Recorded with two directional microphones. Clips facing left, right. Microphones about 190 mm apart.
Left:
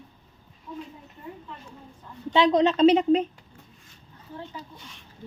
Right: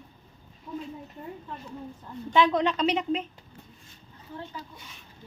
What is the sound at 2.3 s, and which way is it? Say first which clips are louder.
Speech: left 4 dB; 20° left (ahead or behind).